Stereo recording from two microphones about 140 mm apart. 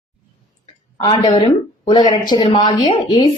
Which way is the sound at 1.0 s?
30° left (ahead or behind).